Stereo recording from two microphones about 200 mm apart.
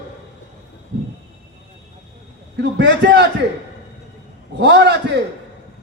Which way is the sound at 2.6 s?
60° right (ahead or behind).